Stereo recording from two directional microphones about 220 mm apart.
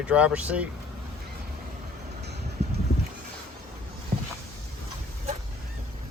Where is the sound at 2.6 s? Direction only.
50° right (ahead or behind).